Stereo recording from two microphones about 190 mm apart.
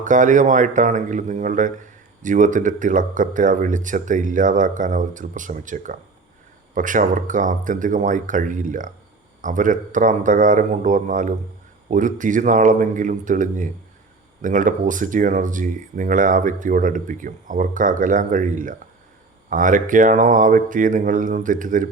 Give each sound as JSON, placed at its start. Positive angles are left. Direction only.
{"t": 0.0, "sound": "a man's voice", "side_deg": -40}